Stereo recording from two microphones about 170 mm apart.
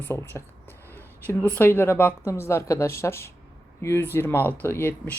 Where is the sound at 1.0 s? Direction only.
10° left (ahead or behind).